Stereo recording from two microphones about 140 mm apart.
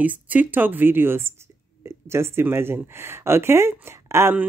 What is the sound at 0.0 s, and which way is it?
Speech, 10° right (ahead or behind).